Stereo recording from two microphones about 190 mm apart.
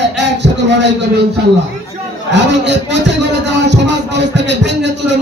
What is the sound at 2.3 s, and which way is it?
Speech, 65° right (ahead or behind).